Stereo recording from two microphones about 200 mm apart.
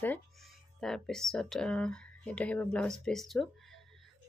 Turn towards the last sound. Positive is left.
turn(degrees=0)  # may be behind; listen again after turning